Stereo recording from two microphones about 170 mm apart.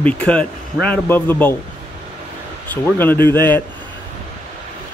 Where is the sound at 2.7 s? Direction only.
10° left (ahead or behind).